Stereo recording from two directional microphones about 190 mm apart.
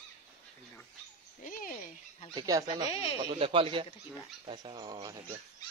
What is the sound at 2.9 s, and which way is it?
Speech, 30° left (ahead or behind).